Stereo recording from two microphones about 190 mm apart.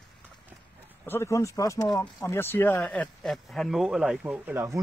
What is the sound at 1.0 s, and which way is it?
A man's voice, 15° left (ahead or behind).